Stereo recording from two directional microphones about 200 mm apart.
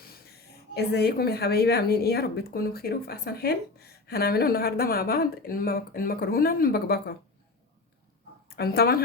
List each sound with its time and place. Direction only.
0.7 s a woman's voice: 55° left (ahead or behind)
8.4 s a woman's voice: 50° left (ahead or behind)